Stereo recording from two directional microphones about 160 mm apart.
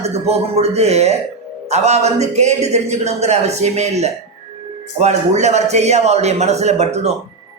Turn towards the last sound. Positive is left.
turn(degrees=-45)  # may be behind; listen again after turning